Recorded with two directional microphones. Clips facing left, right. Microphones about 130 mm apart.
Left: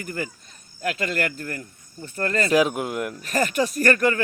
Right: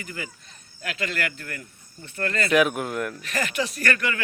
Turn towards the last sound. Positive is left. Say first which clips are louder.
# left 7 dB
turn(degrees=40)  # may be behind; listen again after turning